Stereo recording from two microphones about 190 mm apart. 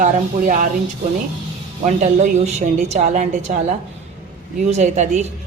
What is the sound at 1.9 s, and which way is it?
A woman's voice, 40° right (ahead or behind).